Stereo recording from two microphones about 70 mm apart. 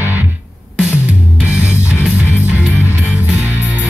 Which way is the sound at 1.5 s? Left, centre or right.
Left.